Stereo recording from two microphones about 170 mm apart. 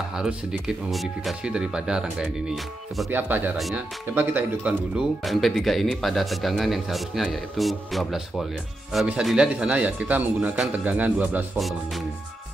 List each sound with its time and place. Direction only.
0.2 s speech: 5° right (ahead or behind)
3.5 s speech: centre (ahead or behind)
4.1 s speech: 10° right (ahead or behind)